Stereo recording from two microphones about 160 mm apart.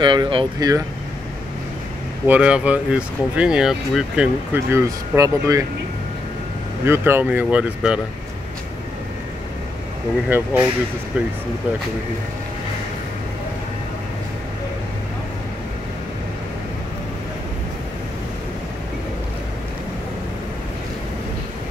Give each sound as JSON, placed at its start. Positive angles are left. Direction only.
{"t": 0.0, "sound": "speech", "side_deg": -30}
{"t": 2.2, "sound": "speech", "side_deg": -10}
{"t": 4.6, "sound": "speech", "side_deg": -15}
{"t": 6.8, "sound": "speech", "side_deg": -15}
{"t": 10.3, "sound": "speech", "side_deg": -10}